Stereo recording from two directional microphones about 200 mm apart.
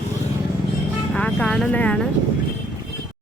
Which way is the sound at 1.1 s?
5° left (ahead or behind).